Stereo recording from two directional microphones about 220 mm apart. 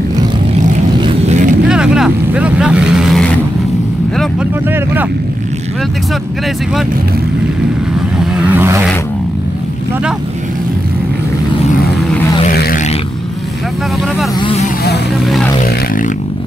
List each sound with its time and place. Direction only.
1.0 s vehicle: 30° right (ahead or behind)
1.7 s vehicle: 5° right (ahead or behind)
8.3 s vehicle: 5° right (ahead or behind)
12.4 s vehicle: 35° left (ahead or behind)